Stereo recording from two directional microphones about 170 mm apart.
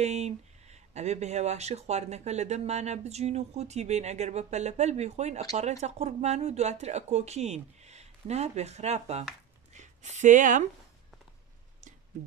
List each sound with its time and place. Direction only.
0.0 s speech: 40° right (ahead or behind)